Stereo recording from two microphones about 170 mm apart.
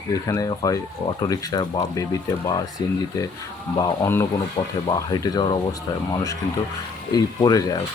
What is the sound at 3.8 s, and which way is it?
Speech, 20° left (ahead or behind).